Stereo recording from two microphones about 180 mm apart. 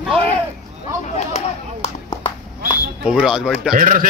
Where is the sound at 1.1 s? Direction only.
35° left (ahead or behind).